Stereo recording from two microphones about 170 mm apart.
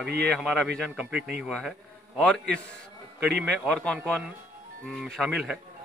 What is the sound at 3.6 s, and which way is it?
A man's voice, 5° left (ahead or behind).